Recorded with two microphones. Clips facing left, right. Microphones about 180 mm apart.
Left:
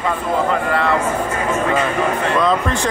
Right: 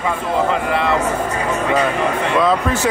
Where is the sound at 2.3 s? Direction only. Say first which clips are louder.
Right 3 dB; 5° right (ahead or behind).